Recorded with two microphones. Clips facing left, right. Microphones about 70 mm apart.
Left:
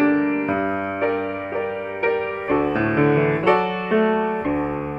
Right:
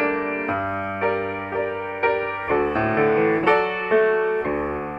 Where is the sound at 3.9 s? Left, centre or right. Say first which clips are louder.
Right 1 dB; right.